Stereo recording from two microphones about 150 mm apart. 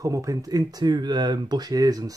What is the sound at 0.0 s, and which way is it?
Speech, 20° right (ahead or behind).